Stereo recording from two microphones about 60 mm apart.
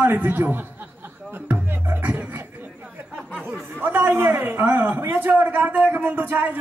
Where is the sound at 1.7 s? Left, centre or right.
Right.